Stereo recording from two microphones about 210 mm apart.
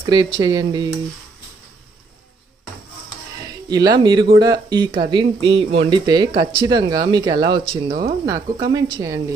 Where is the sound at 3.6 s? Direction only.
20° right (ahead or behind).